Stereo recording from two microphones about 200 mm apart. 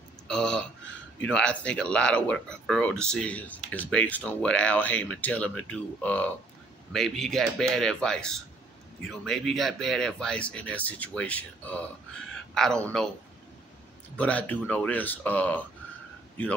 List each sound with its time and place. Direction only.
0.3 s a sound: 5° left (ahead or behind)
1.2 s speech: 5° left (ahead or behind)
14.1 s speech: 5° left (ahead or behind)